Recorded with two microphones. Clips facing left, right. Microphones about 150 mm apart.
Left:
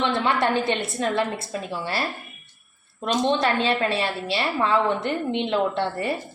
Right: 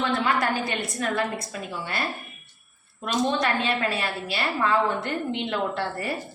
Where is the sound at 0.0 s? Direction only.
25° left (ahead or behind).